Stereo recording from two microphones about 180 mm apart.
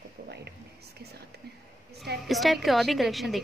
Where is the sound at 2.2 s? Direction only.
Centre (ahead or behind).